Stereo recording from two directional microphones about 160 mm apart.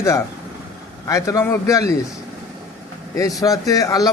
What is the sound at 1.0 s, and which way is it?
Speech, 20° left (ahead or behind).